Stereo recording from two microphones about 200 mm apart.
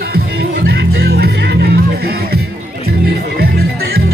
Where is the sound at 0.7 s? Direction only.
55° right (ahead or behind).